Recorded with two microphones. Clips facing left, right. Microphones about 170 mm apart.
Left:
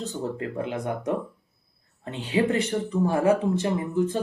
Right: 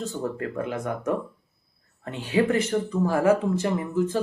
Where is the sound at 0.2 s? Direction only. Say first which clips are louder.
Even; 25° left (ahead or behind).